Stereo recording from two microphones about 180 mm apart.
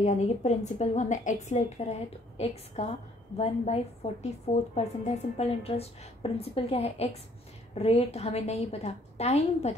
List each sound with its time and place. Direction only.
0.0 s a woman's voice: 40° left (ahead or behind)